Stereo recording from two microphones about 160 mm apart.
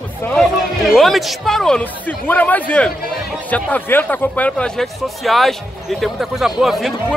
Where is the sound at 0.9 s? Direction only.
Centre (ahead or behind).